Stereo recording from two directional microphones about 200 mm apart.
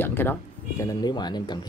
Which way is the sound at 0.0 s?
10° left (ahead or behind).